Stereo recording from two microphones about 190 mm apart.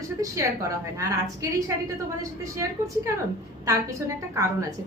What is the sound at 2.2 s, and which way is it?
A woman's voice, 15° right (ahead or behind).